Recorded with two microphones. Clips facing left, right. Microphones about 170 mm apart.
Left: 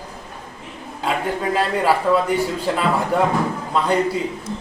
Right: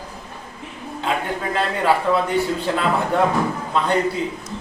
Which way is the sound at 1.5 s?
10° left (ahead or behind).